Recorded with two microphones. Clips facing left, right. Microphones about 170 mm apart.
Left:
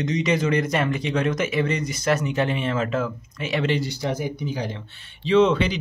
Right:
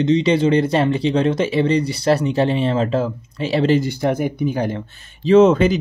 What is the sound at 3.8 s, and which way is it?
Speech, 55° right (ahead or behind).